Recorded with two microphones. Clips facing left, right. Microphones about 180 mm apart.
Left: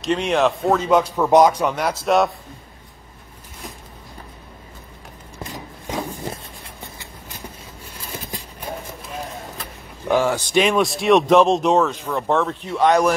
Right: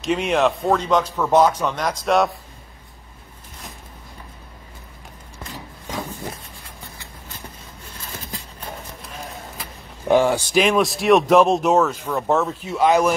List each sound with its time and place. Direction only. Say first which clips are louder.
0.0 s speech: even; centre (ahead or behind)
8.1 s a sound: left 3 dB; 15° left (ahead or behind)
10.0 s speech: right 2 dB; 15° right (ahead or behind)
10.5 s speech: left 3 dB; centre (ahead or behind)